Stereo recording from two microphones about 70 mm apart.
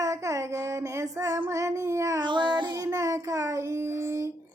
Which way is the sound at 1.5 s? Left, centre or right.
Right.